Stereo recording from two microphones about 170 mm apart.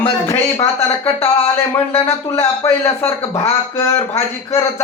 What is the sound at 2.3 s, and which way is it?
Speech, 15° left (ahead or behind).